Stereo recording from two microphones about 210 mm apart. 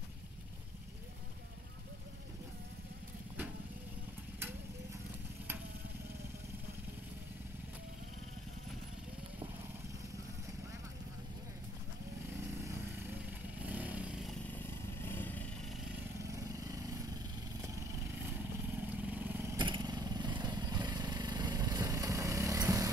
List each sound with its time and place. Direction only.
13.6 s motorcycle: 5° right (ahead or behind)
14.4 s vehicle: 10° left (ahead or behind)
16.3 s vehicle: 15° right (ahead or behind)
18.7 s vehicle: 10° right (ahead or behind)